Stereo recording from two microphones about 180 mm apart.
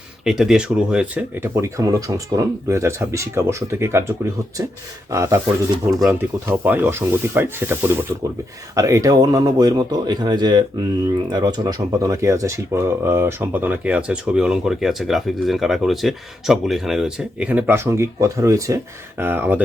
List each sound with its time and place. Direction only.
0.3 s speech: centre (ahead or behind)
5.1 s a man's voice: 15° right (ahead or behind)